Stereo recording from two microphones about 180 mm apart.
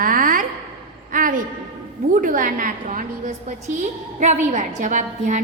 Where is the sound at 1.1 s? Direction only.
50° right (ahead or behind).